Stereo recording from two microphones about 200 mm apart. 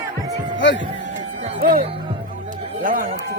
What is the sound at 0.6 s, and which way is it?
Music, 65° left (ahead or behind).